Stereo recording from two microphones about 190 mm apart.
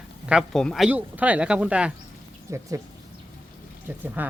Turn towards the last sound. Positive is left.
turn(degrees=-10)  # may be behind; listen again after turning